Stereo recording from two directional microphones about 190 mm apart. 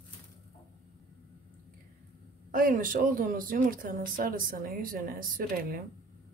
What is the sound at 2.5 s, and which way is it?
Speech, 45° right (ahead or behind).